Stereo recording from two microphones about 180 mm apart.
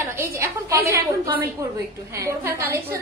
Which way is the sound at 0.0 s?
15° right (ahead or behind).